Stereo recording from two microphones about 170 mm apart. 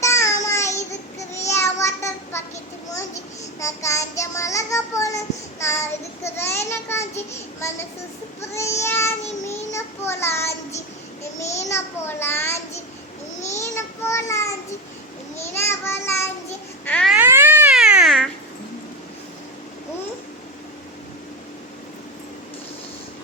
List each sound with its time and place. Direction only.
0.0 s child singing: 15° left (ahead or behind)
3.6 s child singing: 15° left (ahead or behind)
6.3 s a sound: 15° left (ahead or behind)
8.4 s child singing: 15° left (ahead or behind)
11.7 s a child's voice: 15° left (ahead or behind)
13.5 s child singing: 15° left (ahead or behind)
16.8 s baby cry: 5° left (ahead or behind)
17.2 s cat: 10° right (ahead or behind)